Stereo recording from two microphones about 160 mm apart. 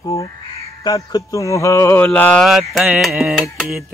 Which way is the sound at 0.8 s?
20° left (ahead or behind).